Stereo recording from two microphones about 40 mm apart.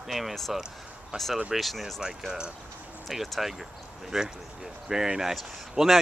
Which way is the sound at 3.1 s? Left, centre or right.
Centre.